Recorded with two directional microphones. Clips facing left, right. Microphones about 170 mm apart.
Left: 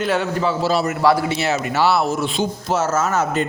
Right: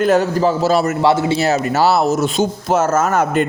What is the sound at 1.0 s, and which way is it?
A man's voice, 35° right (ahead or behind).